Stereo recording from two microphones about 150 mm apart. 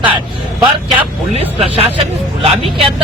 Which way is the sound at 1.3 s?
45° right (ahead or behind).